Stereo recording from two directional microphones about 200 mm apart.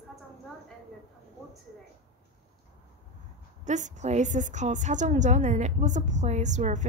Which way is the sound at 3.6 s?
35° right (ahead or behind).